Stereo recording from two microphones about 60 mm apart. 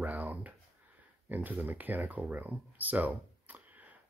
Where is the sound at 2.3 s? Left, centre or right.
Right.